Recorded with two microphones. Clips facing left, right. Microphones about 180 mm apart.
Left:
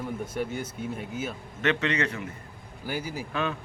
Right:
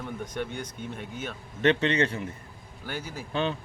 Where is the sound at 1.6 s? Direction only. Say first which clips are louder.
Right 3 dB; 30° right (ahead or behind).